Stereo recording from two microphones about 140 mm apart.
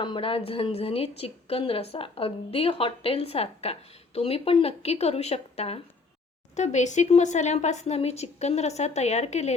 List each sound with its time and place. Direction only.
0.0 s a woman's voice: 40° left (ahead or behind)